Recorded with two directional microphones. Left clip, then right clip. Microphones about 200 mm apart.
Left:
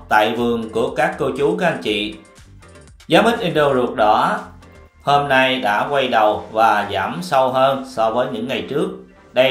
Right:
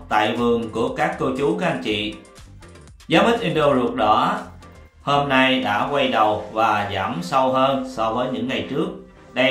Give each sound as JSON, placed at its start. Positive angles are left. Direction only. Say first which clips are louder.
{"t": 0.1, "sound": "speech", "louder": "left 3 dB", "side_deg": 15}
{"t": 3.1, "sound": "speech", "louder": "left 3 dB", "side_deg": 15}